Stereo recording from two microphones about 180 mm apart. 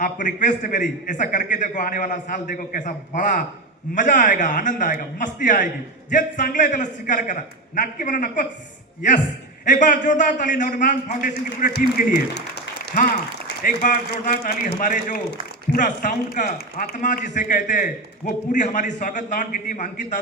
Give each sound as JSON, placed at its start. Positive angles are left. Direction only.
{"t": 0.0, "sound": "a man's voice", "side_deg": 45}
{"t": 9.6, "sound": "a man's voice", "side_deg": 45}
{"t": 11.7, "sound": "a man's voice", "side_deg": 60}
{"t": 13.6, "sound": "a man's voice", "side_deg": 50}